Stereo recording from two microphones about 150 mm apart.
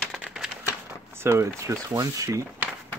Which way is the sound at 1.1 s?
15° right (ahead or behind).